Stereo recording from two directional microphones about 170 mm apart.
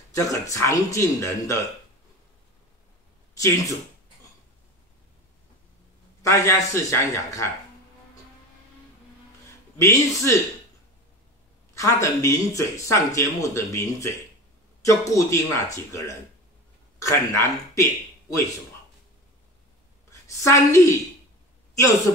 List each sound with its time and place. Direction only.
0.1 s speech: 20° left (ahead or behind)
3.3 s speech: 20° left (ahead or behind)
6.2 s speech: 15° left (ahead or behind)
9.8 s speech: 15° left (ahead or behind)
11.7 s speech: 20° left (ahead or behind)
20.4 s speech: 15° left (ahead or behind)